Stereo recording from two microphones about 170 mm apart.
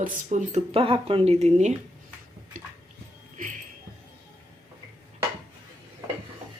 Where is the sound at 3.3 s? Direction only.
45° right (ahead or behind).